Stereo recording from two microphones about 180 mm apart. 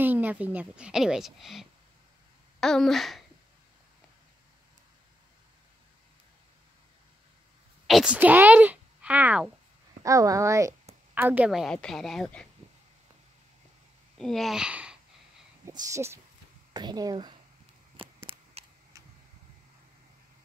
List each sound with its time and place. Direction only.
0.0 s a woman's voice: 10° right (ahead or behind)
7.8 s speech: 5° right (ahead or behind)
10.0 s a woman's voice: 20° right (ahead or behind); by 12.4 s 5° left (ahead or behind)
14.1 s speech: centre (ahead or behind)
15.6 s speech: 20° right (ahead or behind)
17.9 s a sound: 30° right (ahead or behind)
18.9 s vehicle: 15° right (ahead or behind)